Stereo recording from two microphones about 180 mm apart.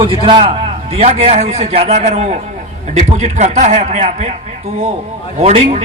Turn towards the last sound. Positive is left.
turn(degrees=-40)  # may be behind; listen again after turning